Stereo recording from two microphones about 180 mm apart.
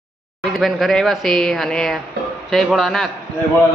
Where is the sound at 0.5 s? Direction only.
Centre (ahead or behind).